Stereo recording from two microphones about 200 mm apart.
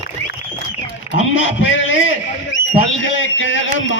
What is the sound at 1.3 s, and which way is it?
Speech, 70° left (ahead or behind).